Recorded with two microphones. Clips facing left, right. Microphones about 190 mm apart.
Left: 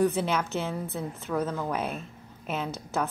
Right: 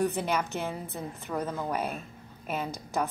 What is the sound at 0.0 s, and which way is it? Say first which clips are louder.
A woman's voice: left 3 dB; 15° right (ahead or behind).